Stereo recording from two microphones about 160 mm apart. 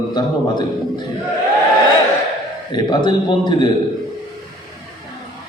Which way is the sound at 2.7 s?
30° left (ahead or behind).